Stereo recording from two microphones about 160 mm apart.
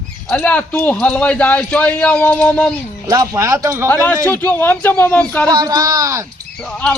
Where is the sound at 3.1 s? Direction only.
20° right (ahead or behind).